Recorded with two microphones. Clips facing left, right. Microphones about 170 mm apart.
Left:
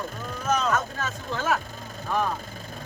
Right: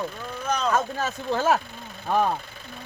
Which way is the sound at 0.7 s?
35° right (ahead or behind).